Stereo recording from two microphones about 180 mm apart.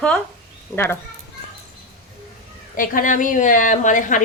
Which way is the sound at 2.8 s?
50° left (ahead or behind).